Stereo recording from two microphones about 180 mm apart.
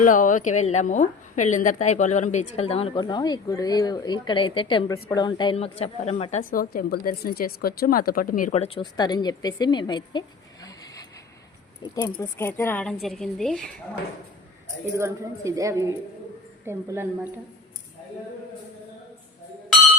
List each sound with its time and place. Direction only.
0.0 s a woman's voice: 45° left (ahead or behind)
6.4 s speech: 50° left (ahead or behind)
8.5 s a woman's voice: 35° left (ahead or behind)
12.2 s a woman's voice: 10° left (ahead or behind)
14.9 s a woman's voice: 15° right (ahead or behind)